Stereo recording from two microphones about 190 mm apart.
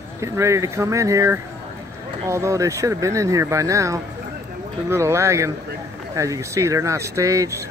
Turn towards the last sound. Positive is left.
turn(degrees=-15)  # may be behind; listen again after turning